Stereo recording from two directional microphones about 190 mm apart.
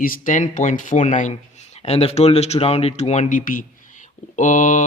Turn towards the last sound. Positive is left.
turn(degrees=40)  # may be behind; listen again after turning